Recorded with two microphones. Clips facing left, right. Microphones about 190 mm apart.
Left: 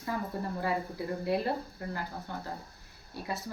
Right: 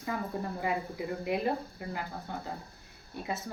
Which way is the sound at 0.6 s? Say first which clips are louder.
Left 1 dB; 15° right (ahead or behind).